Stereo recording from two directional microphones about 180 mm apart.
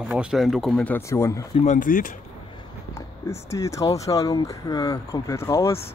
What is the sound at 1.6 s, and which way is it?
Speech, 45° left (ahead or behind).